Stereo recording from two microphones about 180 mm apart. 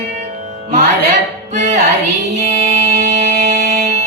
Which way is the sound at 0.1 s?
45° right (ahead or behind).